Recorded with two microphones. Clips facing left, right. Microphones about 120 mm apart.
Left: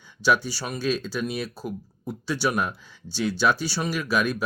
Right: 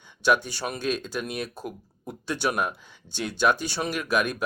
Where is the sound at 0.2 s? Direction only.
60° right (ahead or behind).